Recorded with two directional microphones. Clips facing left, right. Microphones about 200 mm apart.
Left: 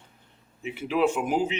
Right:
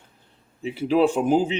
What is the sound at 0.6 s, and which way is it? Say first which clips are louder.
Speech: right 5 dB; 35° right (ahead or behind).